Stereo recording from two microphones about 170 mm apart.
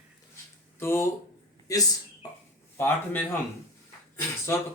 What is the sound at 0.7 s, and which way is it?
Speech, 15° left (ahead or behind).